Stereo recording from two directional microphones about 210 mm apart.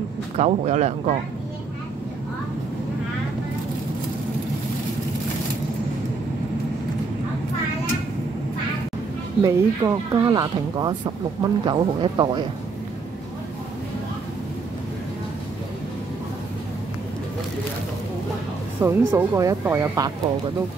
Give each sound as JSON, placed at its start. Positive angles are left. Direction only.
{"t": 0.4, "sound": "speech", "side_deg": -35}
{"t": 9.4, "sound": "speech", "side_deg": -15}
{"t": 18.8, "sound": "speech", "side_deg": -10}